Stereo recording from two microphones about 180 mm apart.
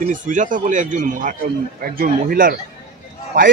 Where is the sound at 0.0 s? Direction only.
45° right (ahead or behind).